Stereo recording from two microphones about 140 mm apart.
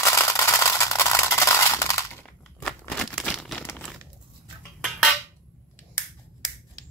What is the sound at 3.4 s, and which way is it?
Crumpling, 5° left (ahead or behind).